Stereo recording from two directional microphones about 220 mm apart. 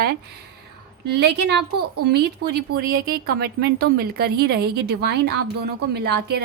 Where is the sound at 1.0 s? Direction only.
50° right (ahead or behind).